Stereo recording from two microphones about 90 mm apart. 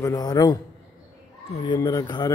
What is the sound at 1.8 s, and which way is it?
Speech, 40° left (ahead or behind).